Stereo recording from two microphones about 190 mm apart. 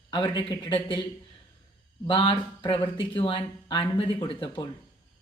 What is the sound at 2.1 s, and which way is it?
Speech, 25° left (ahead or behind).